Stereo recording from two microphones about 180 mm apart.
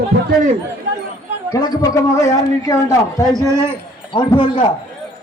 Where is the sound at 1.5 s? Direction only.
20° left (ahead or behind).